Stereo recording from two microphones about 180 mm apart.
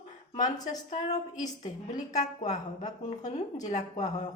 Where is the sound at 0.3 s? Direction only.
45° left (ahead or behind).